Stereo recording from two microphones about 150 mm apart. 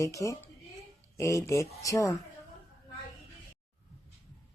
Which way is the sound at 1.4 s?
20° left (ahead or behind).